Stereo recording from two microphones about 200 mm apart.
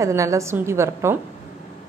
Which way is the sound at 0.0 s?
15° right (ahead or behind).